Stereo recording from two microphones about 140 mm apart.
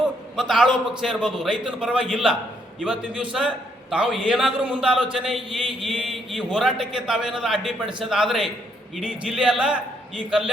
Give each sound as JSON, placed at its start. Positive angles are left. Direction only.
{"t": 0.3, "sound": "a man's voice", "side_deg": 0}